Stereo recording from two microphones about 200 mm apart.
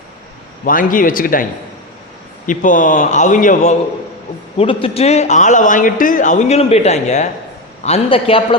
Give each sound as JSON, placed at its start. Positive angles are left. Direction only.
{"t": 0.6, "sound": "a man's voice", "side_deg": 45}
{"t": 2.5, "sound": "a man's voice", "side_deg": 40}
{"t": 4.5, "sound": "a man's voice", "side_deg": 25}